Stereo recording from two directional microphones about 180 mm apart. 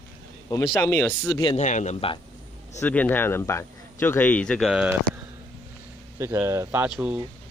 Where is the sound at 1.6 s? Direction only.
40° left (ahead or behind).